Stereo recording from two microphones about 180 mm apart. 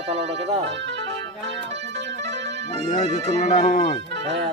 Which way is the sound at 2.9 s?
40° left (ahead or behind).